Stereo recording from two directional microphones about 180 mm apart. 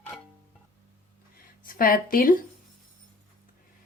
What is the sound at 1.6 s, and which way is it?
Speech, 55° left (ahead or behind).